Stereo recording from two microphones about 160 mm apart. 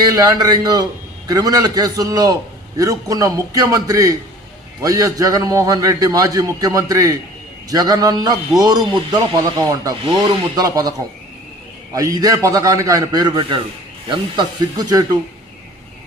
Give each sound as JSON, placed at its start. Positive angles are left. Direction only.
{"t": 0.0, "sound": "a man's voice", "side_deg": -20}